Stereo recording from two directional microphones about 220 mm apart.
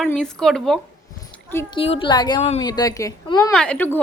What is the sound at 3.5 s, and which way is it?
Speech, 5° left (ahead or behind).